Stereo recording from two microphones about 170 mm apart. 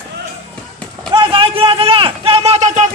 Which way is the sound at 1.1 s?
30° right (ahead or behind).